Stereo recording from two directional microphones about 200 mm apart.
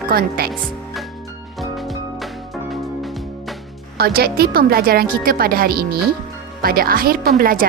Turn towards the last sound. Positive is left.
turn(degrees=-45)  # may be behind; listen again after turning